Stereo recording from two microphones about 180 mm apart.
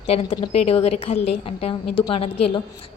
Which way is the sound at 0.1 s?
35° left (ahead or behind).